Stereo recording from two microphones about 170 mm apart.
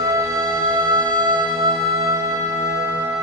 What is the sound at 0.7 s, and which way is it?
Music, 25° right (ahead or behind).